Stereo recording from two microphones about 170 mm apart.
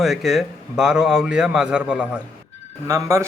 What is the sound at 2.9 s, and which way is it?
Speech, 15° right (ahead or behind).